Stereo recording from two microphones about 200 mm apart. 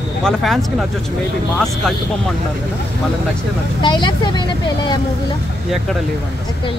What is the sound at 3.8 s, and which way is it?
Speech, 25° left (ahead or behind).